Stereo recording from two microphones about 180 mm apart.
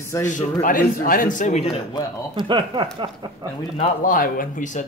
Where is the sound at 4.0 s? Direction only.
50° left (ahead or behind).